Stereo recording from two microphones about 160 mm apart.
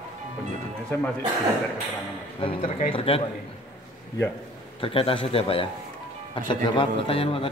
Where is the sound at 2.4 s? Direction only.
35° left (ahead or behind).